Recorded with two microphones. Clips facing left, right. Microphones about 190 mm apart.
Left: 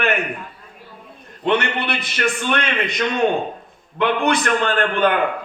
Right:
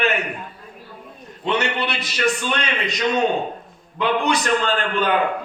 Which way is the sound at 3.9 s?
55° left (ahead or behind).